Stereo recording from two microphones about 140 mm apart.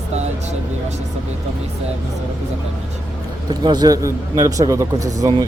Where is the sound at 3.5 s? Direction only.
30° right (ahead or behind).